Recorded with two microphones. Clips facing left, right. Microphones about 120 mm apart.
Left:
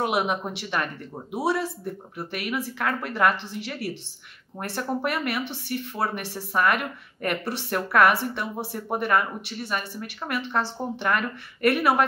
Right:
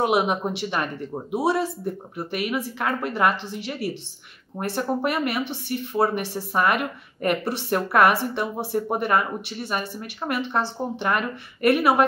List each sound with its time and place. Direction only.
0.0 s speech: 10° right (ahead or behind)